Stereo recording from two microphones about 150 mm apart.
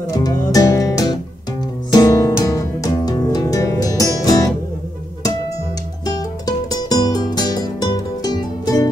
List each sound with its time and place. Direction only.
0.1 s music: 25° left (ahead or behind)
6.0 s music: 25° left (ahead or behind)